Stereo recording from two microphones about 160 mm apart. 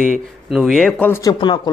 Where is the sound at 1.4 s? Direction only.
30° left (ahead or behind).